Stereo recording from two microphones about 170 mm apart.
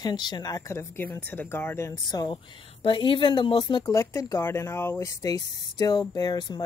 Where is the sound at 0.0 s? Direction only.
25° left (ahead or behind).